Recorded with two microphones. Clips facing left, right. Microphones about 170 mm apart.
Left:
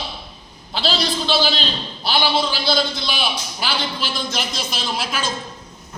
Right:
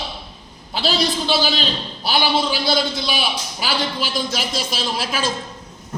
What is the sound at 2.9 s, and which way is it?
A man's voice, 40° right (ahead or behind).